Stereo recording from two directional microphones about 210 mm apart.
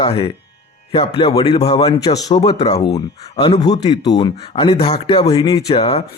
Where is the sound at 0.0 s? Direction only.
25° left (ahead or behind).